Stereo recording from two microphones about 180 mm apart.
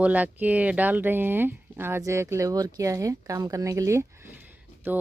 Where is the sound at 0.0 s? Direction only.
10° right (ahead or behind).